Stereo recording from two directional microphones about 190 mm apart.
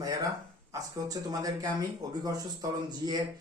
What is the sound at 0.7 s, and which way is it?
Speech, 20° right (ahead or behind).